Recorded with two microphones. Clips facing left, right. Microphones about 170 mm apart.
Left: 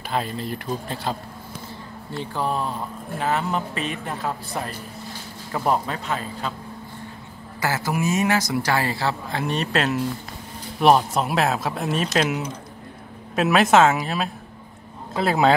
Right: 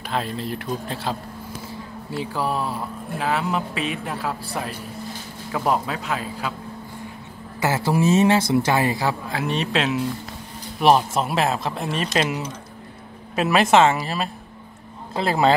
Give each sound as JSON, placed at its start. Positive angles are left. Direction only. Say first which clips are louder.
{"t": 0.1, "sound": "speech", "louder": "even", "side_deg": 0}
{"t": 2.1, "sound": "speech", "louder": "right 1 dB", "side_deg": -5}
{"t": 7.6, "sound": "speech", "louder": "right 4 dB", "side_deg": -25}
{"t": 9.3, "sound": "speech", "louder": "even", "side_deg": 0}